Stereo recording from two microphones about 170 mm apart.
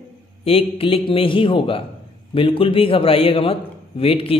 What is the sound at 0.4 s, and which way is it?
A man's voice, 35° left (ahead or behind).